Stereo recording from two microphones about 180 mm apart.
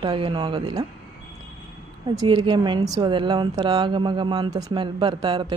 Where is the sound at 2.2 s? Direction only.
25° right (ahead or behind).